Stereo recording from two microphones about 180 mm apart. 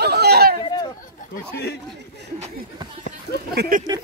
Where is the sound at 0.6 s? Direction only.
25° left (ahead or behind).